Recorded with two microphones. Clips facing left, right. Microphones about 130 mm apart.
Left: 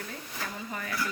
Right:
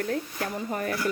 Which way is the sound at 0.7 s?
45° right (ahead or behind).